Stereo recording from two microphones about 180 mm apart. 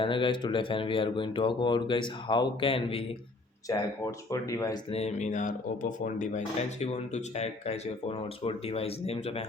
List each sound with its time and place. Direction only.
0.0 s speech: 25° left (ahead or behind)
3.7 s speech: 20° left (ahead or behind)
4.9 s speech: 35° left (ahead or behind)